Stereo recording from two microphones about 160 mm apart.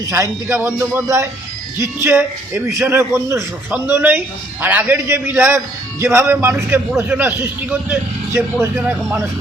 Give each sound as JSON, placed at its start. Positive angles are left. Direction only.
{"t": 0.1, "sound": "a man's voice", "side_deg": -20}